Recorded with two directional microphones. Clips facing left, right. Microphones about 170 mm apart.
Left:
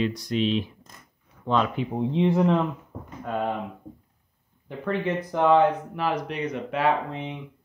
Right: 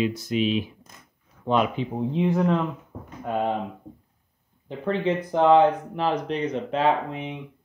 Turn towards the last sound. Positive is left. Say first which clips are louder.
# right 2 dB
turn(degrees=-25)  # may be behind; listen again after turning